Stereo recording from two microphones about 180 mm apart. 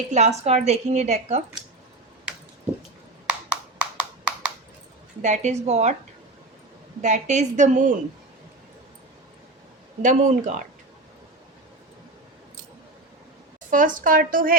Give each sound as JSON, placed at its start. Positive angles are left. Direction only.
{"t": 0.1, "sound": "a woman's voice", "side_deg": -40}
{"t": 3.2, "sound": "a sound", "side_deg": -5}
{"t": 5.2, "sound": "a woman's voice", "side_deg": -40}
{"t": 7.0, "sound": "a woman's voice", "side_deg": -40}
{"t": 10.0, "sound": "a woman's voice", "side_deg": -45}
{"t": 13.7, "sound": "a woman's voice", "side_deg": -45}